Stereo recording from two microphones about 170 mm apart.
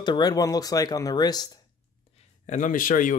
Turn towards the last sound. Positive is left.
turn(degrees=50)  # may be behind; listen again after turning